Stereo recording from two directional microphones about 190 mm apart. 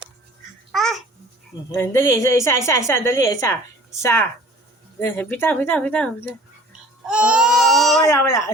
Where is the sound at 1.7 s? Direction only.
15° left (ahead or behind).